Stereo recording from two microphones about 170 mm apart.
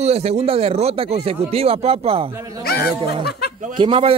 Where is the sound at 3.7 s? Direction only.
30° right (ahead or behind).